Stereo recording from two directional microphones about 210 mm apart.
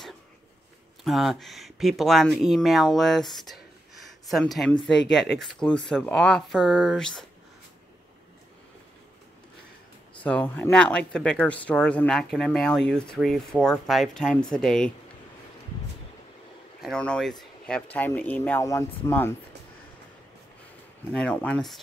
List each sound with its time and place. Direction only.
1.0 s speech: centre (ahead or behind)
10.2 s speech: 5° left (ahead or behind)
16.8 s speech: 5° left (ahead or behind)
21.1 s speech: 5° left (ahead or behind)